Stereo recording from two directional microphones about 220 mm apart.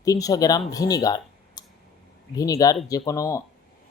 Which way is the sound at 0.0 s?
15° left (ahead or behind).